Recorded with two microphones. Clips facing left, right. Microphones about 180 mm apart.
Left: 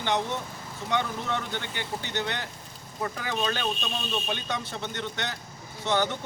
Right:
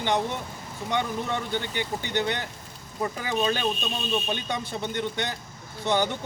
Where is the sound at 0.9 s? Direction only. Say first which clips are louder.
Right 1 dB; 15° right (ahead or behind).